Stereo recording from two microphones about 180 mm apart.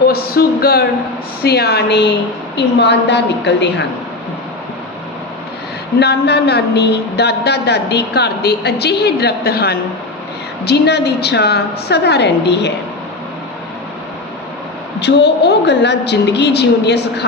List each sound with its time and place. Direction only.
0.1 s a man's voice: 60° left (ahead or behind); by 3.8 s 75° left (ahead or behind)
6.0 s a man's voice: 65° left (ahead or behind)
15.0 s a woman's voice: 70° left (ahead or behind)